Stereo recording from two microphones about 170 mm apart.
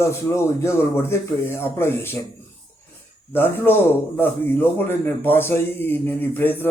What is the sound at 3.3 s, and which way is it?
Speech, 10° left (ahead or behind).